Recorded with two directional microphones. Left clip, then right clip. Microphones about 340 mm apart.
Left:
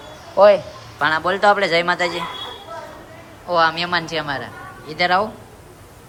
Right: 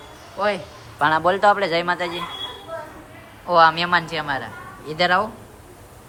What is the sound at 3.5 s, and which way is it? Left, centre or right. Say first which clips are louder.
A man's voice: right 2 dB; centre.